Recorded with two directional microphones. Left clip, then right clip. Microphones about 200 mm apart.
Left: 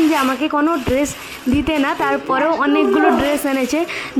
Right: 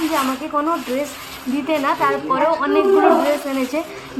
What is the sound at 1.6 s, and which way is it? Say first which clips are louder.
A woman's voice: right 2 dB; 45° left (ahead or behind).